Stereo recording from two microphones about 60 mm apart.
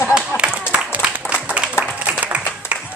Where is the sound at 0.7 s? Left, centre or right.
Right.